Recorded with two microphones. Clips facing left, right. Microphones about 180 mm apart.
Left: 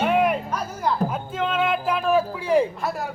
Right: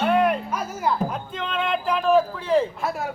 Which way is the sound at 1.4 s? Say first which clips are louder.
Left 3 dB; 5° left (ahead or behind).